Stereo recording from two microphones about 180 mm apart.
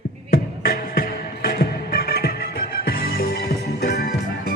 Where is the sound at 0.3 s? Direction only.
55° left (ahead or behind).